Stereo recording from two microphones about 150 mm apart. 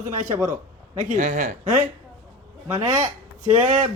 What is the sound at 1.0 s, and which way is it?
Speech, 55° right (ahead or behind).